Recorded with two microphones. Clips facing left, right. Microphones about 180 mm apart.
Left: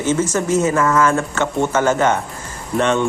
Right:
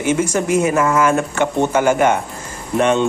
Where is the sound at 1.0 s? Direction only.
15° right (ahead or behind).